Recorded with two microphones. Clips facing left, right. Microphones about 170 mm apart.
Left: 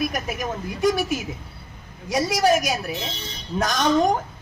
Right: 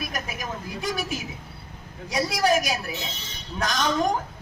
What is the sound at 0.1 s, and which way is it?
Speech, 50° left (ahead or behind).